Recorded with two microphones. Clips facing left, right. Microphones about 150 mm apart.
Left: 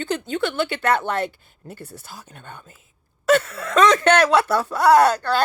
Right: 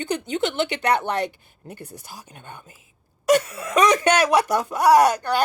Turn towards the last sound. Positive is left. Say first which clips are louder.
# left 1 dB
turn(degrees=-15)  # may be behind; listen again after turning